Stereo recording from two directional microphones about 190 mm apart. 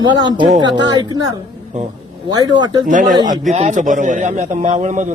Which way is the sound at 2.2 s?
20° right (ahead or behind).